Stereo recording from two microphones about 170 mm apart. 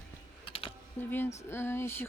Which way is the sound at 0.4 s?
35° left (ahead or behind).